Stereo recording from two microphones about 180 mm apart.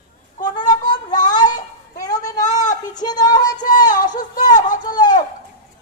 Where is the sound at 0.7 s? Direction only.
20° left (ahead or behind).